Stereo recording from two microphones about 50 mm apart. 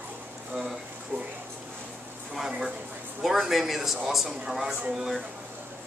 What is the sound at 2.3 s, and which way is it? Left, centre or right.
A man's voice, centre.